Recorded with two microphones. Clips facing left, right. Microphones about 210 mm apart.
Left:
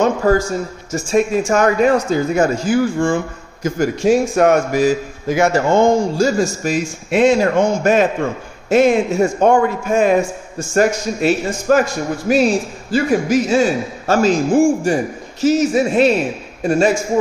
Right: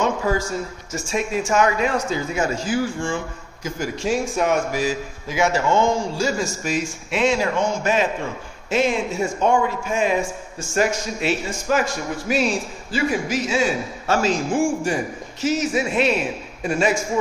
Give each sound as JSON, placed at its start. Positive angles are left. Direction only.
{"t": 0.0, "sound": "a man's voice", "side_deg": 45}